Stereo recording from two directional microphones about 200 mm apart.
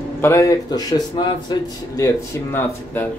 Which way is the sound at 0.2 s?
15° left (ahead or behind).